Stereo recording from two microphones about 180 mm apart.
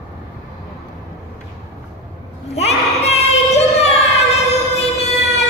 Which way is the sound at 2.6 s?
35° left (ahead or behind).